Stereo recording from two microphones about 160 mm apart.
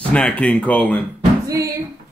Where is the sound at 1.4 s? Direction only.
20° right (ahead or behind).